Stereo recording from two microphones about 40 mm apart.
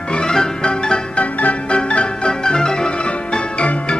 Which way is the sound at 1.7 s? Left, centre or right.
Left.